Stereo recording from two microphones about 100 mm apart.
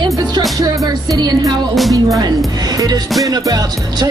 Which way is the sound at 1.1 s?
40° right (ahead or behind).